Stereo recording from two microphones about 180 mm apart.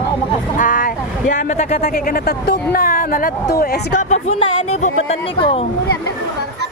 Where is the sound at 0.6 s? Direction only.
50° left (ahead or behind).